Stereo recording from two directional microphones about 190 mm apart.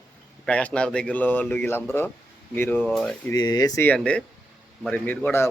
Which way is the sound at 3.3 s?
20° left (ahead or behind).